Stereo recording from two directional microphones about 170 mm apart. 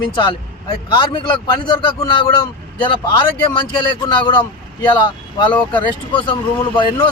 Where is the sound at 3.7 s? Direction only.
25° left (ahead or behind).